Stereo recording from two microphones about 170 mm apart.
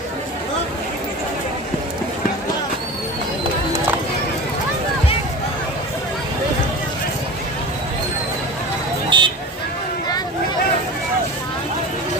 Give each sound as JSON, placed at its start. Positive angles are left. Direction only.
{"t": 9.0, "sound": "vehicle", "side_deg": -25}